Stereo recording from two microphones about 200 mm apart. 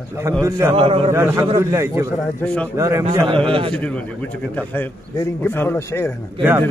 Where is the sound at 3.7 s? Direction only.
5° left (ahead or behind).